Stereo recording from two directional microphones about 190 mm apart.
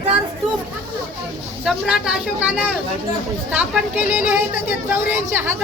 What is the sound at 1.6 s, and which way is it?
Speech, 5° right (ahead or behind).